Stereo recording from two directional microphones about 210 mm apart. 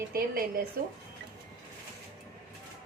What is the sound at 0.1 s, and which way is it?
Speech, 45° right (ahead or behind).